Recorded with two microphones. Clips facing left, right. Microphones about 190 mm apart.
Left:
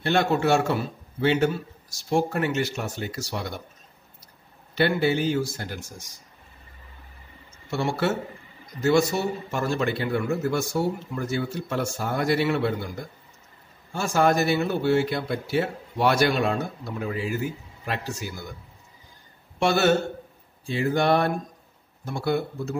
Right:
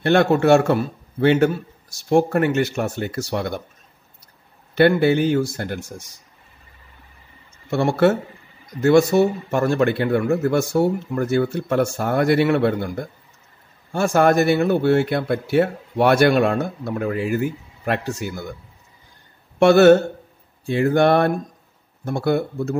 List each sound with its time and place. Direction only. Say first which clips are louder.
0.0 s speech: right 6 dB; 60° right (ahead or behind)
4.7 s speech: right 7 dB; 60° right (ahead or behind)
7.7 s speech: right 8 dB; 55° right (ahead or behind)
19.6 s speech: right 10 dB; 55° right (ahead or behind)